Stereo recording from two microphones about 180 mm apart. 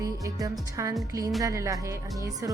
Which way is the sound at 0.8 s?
15° right (ahead or behind).